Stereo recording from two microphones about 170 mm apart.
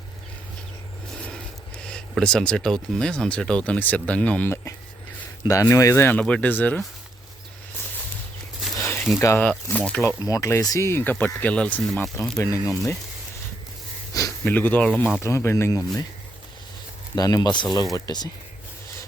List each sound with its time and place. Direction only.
1.9 s speech: 5° left (ahead or behind)
8.8 s a sound: 15° left (ahead or behind)
9.2 s speech: 10° left (ahead or behind)
12.1 s speech: 15° left (ahead or behind)
14.1 s a sound: 20° left (ahead or behind)
14.5 s speech: 10° left (ahead or behind)
14.9 s speech: centre (ahead or behind)
15.2 s speech: 15° left (ahead or behind)
17.2 s speech: 20° left (ahead or behind)